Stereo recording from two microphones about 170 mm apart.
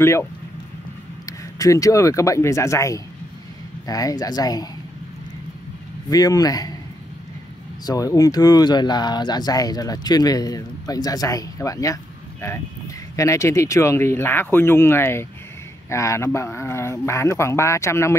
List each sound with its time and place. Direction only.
0.0 s speech: 15° left (ahead or behind)
6.0 s speech: 20° left (ahead or behind)
7.8 s speech: 20° left (ahead or behind)